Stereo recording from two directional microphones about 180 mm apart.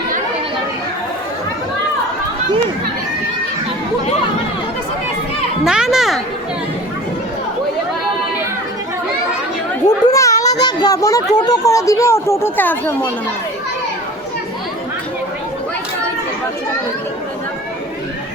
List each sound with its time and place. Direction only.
5.6 s a child's voice: 5° right (ahead or behind)
9.8 s a child's voice: 20° left (ahead or behind)